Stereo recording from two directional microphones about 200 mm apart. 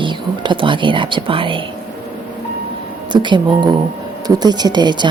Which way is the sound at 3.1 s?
25° right (ahead or behind).